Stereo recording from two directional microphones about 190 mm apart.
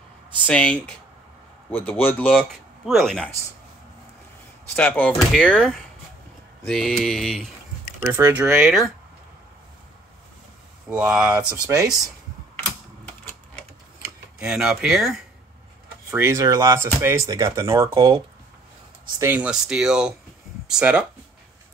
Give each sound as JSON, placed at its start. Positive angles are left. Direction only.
{"t": 0.5, "sound": "speech", "side_deg": 5}
{"t": 4.7, "sound": "speech", "side_deg": 10}
{"t": 8.0, "sound": "speech", "side_deg": -10}
{"t": 10.9, "sound": "speech", "side_deg": -5}
{"t": 14.4, "sound": "speech", "side_deg": -5}
{"t": 16.1, "sound": "speech", "side_deg": -10}